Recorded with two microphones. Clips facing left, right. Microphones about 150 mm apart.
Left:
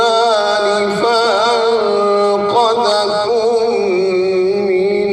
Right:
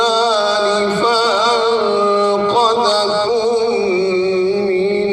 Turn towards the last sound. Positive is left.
turn(degrees=55)  # may be behind; listen again after turning